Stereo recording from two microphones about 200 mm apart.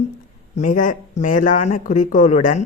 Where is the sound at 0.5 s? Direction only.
40° left (ahead or behind).